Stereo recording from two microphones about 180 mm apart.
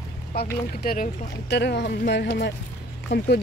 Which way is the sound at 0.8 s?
50° left (ahead or behind).